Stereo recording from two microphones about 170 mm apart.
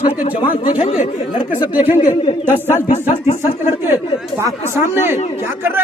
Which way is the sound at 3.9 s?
15° right (ahead or behind).